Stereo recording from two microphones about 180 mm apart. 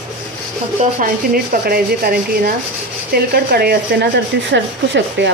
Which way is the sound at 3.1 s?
60° right (ahead or behind).